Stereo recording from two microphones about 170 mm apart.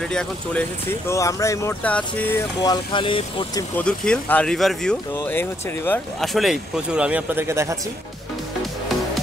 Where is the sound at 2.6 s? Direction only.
25° left (ahead or behind).